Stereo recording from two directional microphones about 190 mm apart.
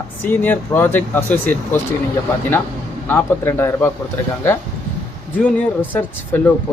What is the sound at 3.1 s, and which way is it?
Speech, 10° left (ahead or behind).